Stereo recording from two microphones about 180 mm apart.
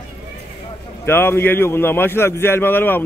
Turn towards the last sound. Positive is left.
turn(degrees=10)  # may be behind; listen again after turning